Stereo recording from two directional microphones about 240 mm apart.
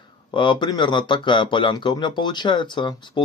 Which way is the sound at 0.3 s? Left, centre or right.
Centre.